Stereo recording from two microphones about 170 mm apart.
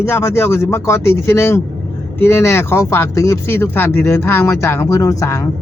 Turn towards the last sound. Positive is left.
turn(degrees=20)  # may be behind; listen again after turning